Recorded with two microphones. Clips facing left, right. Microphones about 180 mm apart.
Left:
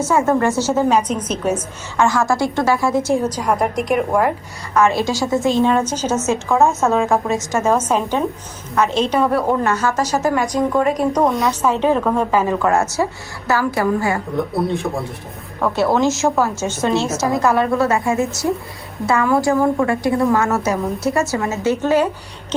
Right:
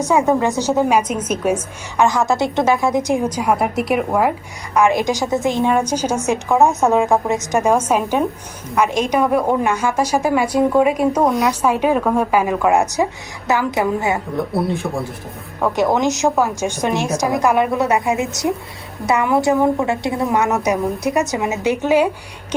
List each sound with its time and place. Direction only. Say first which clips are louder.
0.0 s a woman's voice: even; 15° right (ahead or behind)
14.3 s speech: even; centre (ahead or behind)
15.6 s a woman's voice: even; 15° right (ahead or behind)